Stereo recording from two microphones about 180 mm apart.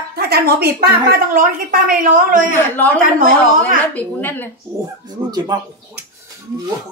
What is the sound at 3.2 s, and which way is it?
Speech, 50° right (ahead or behind).